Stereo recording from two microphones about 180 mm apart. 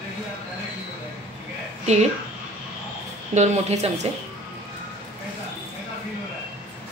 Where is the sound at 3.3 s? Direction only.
40° right (ahead or behind).